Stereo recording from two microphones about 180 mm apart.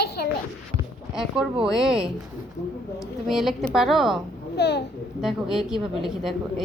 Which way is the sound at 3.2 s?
Centre (ahead or behind).